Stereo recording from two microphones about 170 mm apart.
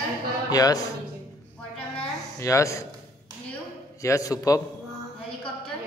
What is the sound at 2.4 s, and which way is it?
Speech, 15° left (ahead or behind).